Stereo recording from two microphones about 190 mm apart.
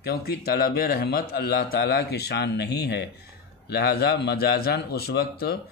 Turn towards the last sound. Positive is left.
turn(degrees=55)  # may be behind; listen again after turning